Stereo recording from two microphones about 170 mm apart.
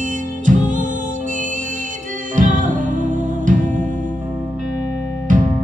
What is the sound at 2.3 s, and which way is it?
Music, 50° right (ahead or behind).